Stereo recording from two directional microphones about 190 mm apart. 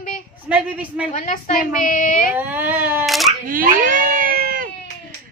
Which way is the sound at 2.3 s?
10° right (ahead or behind).